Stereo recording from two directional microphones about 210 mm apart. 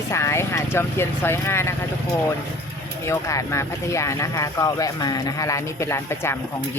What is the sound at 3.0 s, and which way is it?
Speech, 15° left (ahead or behind).